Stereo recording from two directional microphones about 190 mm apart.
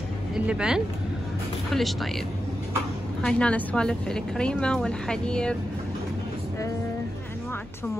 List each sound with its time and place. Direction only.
0.3 s speech: 5° right (ahead or behind)
3.2 s speech: 5° left (ahead or behind)